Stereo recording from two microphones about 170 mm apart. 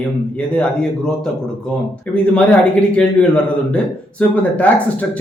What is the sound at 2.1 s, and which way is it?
A man's voice, 5° left (ahead or behind).